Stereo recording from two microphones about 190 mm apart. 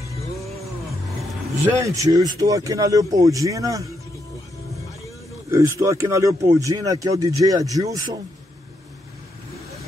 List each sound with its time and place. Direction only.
1.7 s speech: 15° right (ahead or behind)
5.5 s speech: 15° right (ahead or behind)